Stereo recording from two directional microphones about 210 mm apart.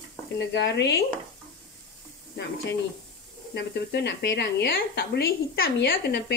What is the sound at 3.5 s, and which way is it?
Speech, 55° left (ahead or behind).